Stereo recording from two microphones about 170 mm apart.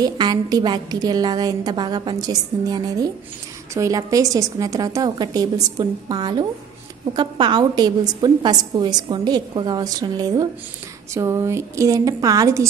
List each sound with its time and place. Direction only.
0.0 s a woman's voice: 25° right (ahead or behind)